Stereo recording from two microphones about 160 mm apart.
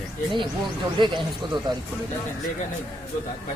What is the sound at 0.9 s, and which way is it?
Speech, 30° right (ahead or behind).